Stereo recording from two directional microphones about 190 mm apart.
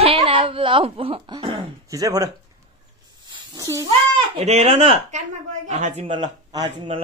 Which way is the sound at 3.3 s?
20° right (ahead or behind).